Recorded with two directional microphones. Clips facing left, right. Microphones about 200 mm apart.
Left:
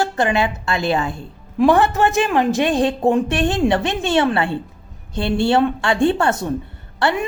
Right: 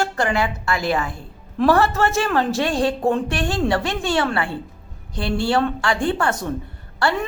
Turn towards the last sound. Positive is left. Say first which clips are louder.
# left 2 dB
turn(degrees=20)  # may be behind; listen again after turning